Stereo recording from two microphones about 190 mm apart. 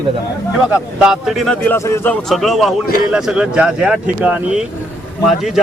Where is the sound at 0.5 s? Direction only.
5° right (ahead or behind).